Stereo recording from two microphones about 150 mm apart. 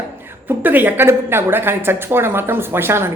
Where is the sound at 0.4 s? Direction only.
10° right (ahead or behind).